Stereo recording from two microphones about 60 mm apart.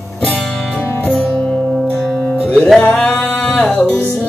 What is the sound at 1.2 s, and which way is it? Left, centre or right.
Music, left.